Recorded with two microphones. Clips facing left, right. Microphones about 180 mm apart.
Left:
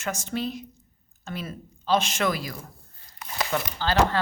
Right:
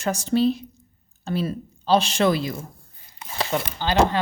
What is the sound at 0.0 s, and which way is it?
A woman's voice, 35° right (ahead or behind).